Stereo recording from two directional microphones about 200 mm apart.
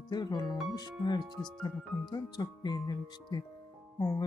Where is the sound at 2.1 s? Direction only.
20° left (ahead or behind).